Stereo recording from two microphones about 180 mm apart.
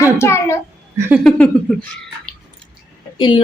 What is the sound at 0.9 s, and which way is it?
Speech, 15° right (ahead or behind).